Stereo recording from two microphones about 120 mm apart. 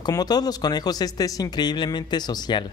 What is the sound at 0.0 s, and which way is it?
Speech, 35° left (ahead or behind).